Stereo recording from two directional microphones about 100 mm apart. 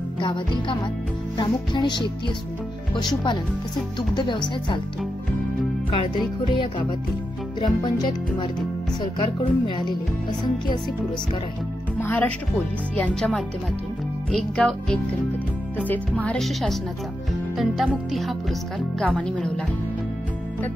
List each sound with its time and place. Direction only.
0.2 s speech: 50° left (ahead or behind)
5.9 s music: 60° left (ahead or behind)
7.6 s speech: 45° left (ahead or behind)
12.0 s speech: 15° left (ahead or behind)
12.9 s music: 10° left (ahead or behind)
16.3 s music: centre (ahead or behind)